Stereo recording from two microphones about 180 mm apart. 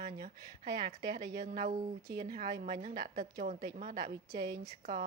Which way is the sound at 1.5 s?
45° right (ahead or behind).